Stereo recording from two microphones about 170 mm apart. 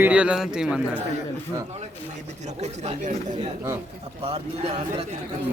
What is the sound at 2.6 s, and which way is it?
Speech, 40° right (ahead or behind).